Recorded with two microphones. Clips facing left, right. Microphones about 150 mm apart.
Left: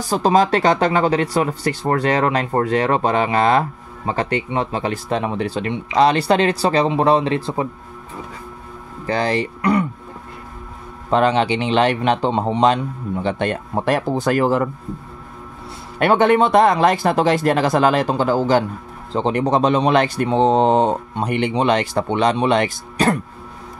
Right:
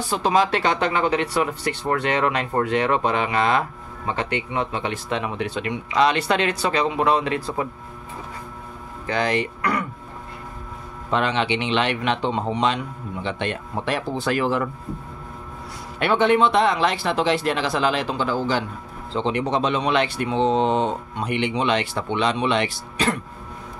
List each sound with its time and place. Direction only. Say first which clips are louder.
0.0 s speech: left 4 dB; 40° left (ahead or behind)
9.0 s speech: left 3 dB; 35° left (ahead or behind)
9.6 s music: left 7 dB; 20° left (ahead or behind)
11.1 s speech: left 6 dB; 40° left (ahead or behind)
16.0 s speech: left 4 dB; 45° left (ahead or behind)